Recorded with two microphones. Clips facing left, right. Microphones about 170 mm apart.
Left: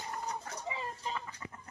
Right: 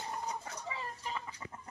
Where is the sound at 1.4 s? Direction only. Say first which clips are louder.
Even; 20° right (ahead or behind).